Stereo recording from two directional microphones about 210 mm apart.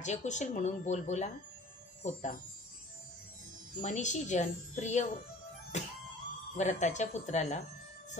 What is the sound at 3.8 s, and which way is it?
A woman's voice, 35° left (ahead or behind).